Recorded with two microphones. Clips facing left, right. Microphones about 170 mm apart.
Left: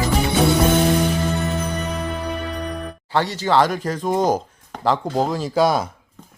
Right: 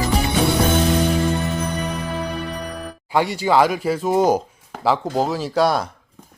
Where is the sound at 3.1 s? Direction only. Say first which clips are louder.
Right 1 dB; 10° right (ahead or behind).